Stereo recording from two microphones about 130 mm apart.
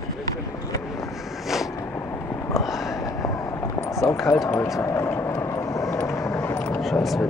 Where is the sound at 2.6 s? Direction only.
Centre (ahead or behind).